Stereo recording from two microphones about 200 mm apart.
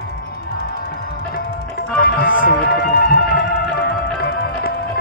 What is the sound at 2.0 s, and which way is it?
Music, 50° left (ahead or behind).